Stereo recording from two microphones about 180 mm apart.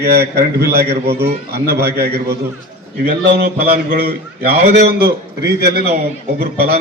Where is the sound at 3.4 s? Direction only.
60° right (ahead or behind).